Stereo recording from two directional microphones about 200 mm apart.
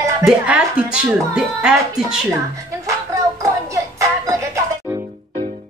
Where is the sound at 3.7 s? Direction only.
15° right (ahead or behind).